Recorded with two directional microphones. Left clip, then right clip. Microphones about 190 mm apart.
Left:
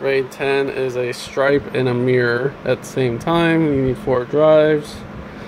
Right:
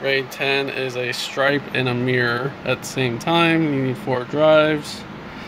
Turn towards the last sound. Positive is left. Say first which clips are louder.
# left 3 dB
turn(degrees=15)  # may be behind; listen again after turning